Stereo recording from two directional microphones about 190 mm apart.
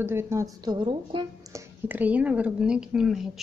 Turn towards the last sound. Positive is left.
turn(degrees=0)  # may be behind; listen again after turning